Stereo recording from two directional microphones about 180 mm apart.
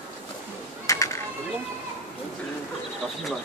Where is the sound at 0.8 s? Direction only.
15° left (ahead or behind).